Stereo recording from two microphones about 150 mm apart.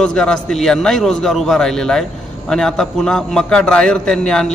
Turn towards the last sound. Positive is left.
turn(degrees=5)  # may be behind; listen again after turning